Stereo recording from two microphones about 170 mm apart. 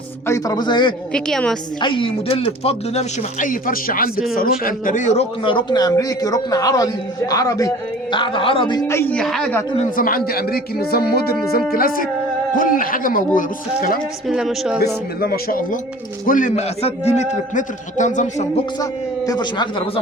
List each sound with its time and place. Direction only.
0.3 s a man's voice: 20° left (ahead or behind)
1.1 s speech: 5° left (ahead or behind)
1.8 s a man's voice: 30° left (ahead or behind)
5.4 s a man's voice: 30° left (ahead or behind)
8.1 s a man's voice: 30° left (ahead or behind); by 9.5 s 5° left (ahead or behind)
9.7 s speech: 50° left (ahead or behind)
14.3 s speech: centre (ahead or behind)
15.2 s a man's voice: 60° left (ahead or behind)
18.8 s a man's voice: 20° left (ahead or behind)